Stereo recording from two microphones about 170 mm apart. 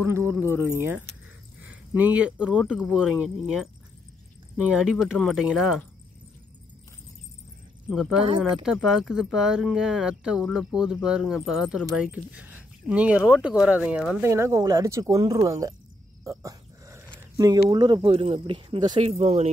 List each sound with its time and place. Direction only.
0.0 s speech: 15° right (ahead or behind)
7.9 s speech: centre (ahead or behind)
14.2 s speech: 15° right (ahead or behind)
16.3 s dog: 20° right (ahead or behind)
17.6 s speech: 25° right (ahead or behind)